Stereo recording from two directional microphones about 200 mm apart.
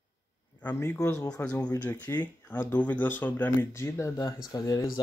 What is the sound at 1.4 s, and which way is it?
Speech, 5° left (ahead or behind).